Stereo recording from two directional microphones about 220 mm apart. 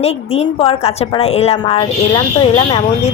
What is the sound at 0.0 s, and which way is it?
A woman's voice, 25° left (ahead or behind).